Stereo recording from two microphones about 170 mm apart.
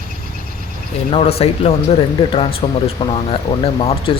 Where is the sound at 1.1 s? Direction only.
35° left (ahead or behind).